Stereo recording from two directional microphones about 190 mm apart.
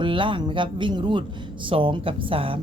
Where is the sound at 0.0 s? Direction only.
25° right (ahead or behind).